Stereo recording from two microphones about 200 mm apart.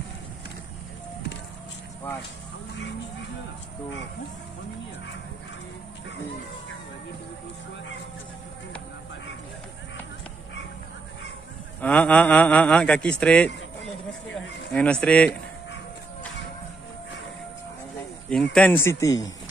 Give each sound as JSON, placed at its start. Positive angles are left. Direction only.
{"t": 11.8, "sound": "speech", "side_deg": 5}
{"t": 18.3, "sound": "speech", "side_deg": 5}